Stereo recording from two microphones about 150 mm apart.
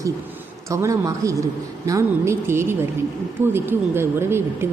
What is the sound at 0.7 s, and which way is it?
A man's voice, 20° right (ahead or behind).